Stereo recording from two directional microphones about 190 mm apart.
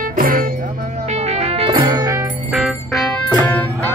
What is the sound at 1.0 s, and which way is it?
Music, 35° right (ahead or behind).